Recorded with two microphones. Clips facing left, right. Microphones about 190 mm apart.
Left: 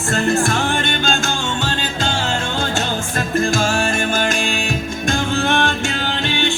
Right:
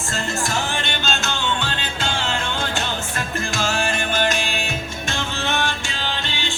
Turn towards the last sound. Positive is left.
turn(degrees=50)  # may be behind; listen again after turning